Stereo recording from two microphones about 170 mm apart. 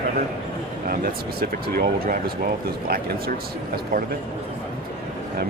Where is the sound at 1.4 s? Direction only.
65° right (ahead or behind).